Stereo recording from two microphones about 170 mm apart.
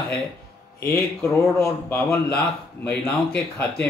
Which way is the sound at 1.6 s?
15° left (ahead or behind).